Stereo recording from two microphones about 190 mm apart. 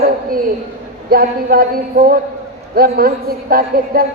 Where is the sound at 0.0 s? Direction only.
50° right (ahead or behind).